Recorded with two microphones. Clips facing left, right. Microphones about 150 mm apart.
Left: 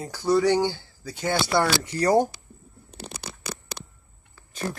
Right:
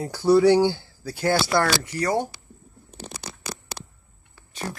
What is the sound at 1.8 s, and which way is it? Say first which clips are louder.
Speech: left 3 dB; 30° left (ahead or behind).